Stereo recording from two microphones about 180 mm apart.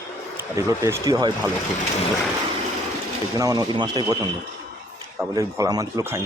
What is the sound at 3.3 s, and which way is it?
Speech, 20° right (ahead or behind).